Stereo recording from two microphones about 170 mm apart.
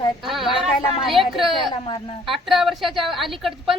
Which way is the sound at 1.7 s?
30° left (ahead or behind).